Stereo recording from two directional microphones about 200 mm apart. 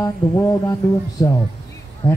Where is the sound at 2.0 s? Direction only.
25° left (ahead or behind).